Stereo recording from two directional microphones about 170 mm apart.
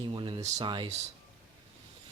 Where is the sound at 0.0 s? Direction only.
30° right (ahead or behind).